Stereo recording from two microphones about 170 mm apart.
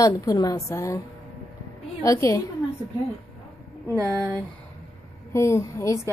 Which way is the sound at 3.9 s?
20° right (ahead or behind).